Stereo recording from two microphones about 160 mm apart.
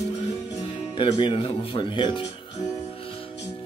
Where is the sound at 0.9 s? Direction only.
30° left (ahead or behind).